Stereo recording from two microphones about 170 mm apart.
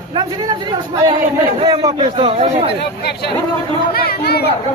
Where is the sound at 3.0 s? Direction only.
70° left (ahead or behind).